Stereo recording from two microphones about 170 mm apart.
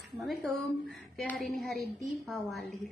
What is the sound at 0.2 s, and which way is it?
Speech, centre (ahead or behind).